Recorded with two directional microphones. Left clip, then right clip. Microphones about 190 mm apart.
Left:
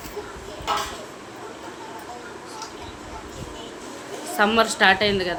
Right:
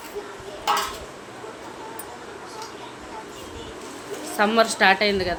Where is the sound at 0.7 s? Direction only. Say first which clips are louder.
Right 2 dB; 55° right (ahead or behind).